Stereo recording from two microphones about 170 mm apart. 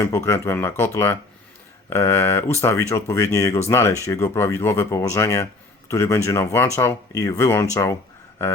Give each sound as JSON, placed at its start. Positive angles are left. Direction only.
{"t": 0.0, "sound": "speech", "side_deg": 15}